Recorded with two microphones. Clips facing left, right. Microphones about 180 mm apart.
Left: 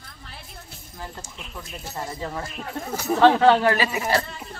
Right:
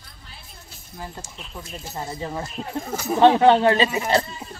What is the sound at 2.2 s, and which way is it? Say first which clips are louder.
Speech: right 2 dB; 20° right (ahead or behind).